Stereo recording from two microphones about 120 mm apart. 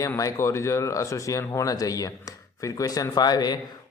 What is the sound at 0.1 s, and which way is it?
A man's voice, 25° left (ahead or behind).